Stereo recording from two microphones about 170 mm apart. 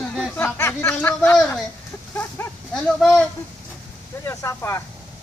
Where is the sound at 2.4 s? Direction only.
15° left (ahead or behind).